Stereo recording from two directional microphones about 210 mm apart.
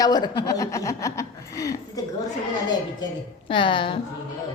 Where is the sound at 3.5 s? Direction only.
25° left (ahead or behind).